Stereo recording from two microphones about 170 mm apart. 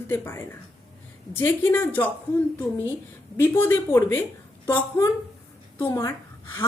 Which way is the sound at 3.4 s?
10° left (ahead or behind).